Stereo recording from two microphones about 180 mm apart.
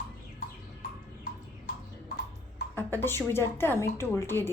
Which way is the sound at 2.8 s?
10° left (ahead or behind).